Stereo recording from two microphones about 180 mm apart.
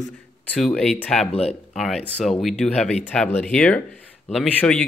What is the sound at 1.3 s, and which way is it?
Speech, 35° left (ahead or behind).